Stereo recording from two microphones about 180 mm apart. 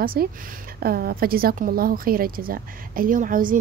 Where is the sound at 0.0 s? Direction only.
55° right (ahead or behind).